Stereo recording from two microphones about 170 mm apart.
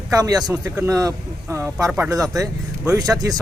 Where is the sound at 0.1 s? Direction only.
20° right (ahead or behind).